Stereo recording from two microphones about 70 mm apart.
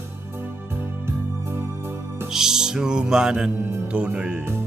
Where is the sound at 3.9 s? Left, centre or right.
Centre.